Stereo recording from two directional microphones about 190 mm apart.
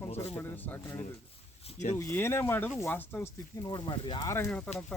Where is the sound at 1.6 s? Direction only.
40° left (ahead or behind).